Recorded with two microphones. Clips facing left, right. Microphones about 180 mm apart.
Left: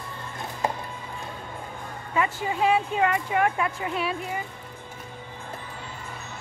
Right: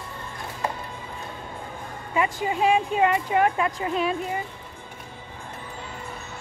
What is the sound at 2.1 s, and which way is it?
Speech, 20° right (ahead or behind).